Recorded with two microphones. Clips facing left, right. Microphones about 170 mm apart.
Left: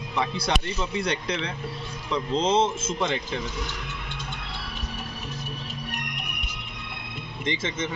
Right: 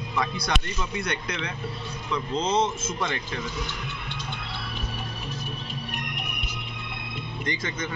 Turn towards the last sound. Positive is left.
turn(degrees=25)  # may be behind; listen again after turning